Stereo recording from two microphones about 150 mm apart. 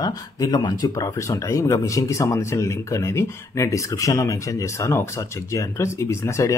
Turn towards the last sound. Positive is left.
turn(degrees=20)  # may be behind; listen again after turning